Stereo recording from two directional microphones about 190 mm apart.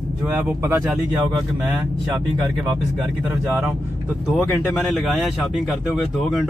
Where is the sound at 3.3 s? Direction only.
15° right (ahead or behind).